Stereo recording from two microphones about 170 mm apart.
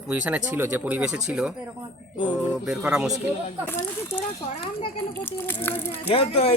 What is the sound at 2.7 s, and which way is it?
Speech, 5° right (ahead or behind).